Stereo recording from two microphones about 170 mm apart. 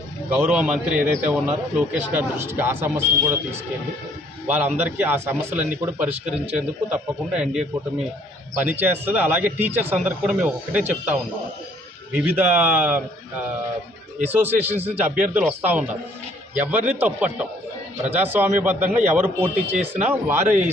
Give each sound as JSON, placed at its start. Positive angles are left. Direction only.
{"t": 0.3, "sound": "a man's voice", "side_deg": -5}
{"t": 4.4, "sound": "a man's voice", "side_deg": -10}
{"t": 6.2, "sound": "speech", "side_deg": -40}
{"t": 6.9, "sound": "a man's voice", "side_deg": -5}
{"t": 14.3, "sound": "a man's voice", "side_deg": -10}